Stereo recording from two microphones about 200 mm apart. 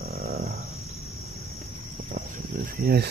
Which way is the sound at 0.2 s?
50° right (ahead or behind).